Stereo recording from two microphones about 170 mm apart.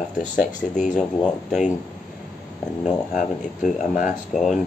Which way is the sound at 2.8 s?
45° left (ahead or behind).